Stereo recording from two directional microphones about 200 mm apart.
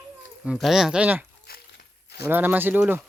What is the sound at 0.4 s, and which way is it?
Speech, centre (ahead or behind).